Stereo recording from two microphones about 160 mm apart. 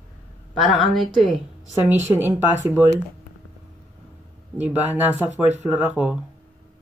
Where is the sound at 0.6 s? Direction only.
Centre (ahead or behind).